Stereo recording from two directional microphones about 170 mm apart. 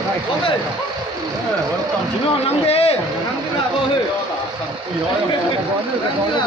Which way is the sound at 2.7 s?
35° left (ahead or behind).